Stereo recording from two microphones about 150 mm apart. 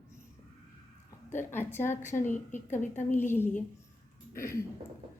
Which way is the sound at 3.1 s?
15° left (ahead or behind).